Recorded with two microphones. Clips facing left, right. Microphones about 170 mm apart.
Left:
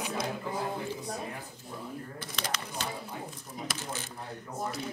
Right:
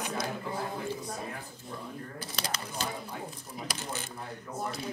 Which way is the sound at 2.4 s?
35° right (ahead or behind).